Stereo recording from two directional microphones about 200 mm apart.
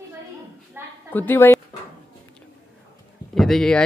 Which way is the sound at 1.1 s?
10° left (ahead or behind).